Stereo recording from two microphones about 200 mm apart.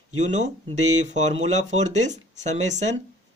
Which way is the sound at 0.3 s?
35° right (ahead or behind).